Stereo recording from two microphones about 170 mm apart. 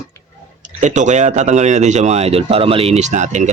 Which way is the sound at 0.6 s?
45° right (ahead or behind).